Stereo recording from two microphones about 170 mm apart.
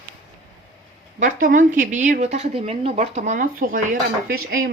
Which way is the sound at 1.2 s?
55° right (ahead or behind).